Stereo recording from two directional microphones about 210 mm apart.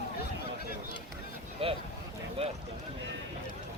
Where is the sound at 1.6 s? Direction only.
25° right (ahead or behind).